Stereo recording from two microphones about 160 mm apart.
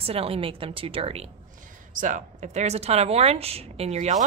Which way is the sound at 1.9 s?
55° right (ahead or behind).